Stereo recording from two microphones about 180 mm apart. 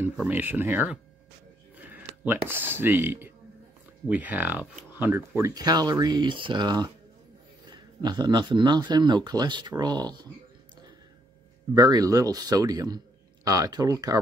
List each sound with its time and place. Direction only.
0.0 s speech: 10° right (ahead or behind)
11.7 s speech: 20° right (ahead or behind)